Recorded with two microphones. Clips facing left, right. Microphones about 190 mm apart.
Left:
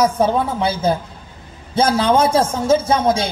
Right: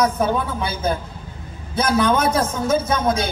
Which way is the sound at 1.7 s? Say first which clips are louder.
Left 3 dB; 30° left (ahead or behind).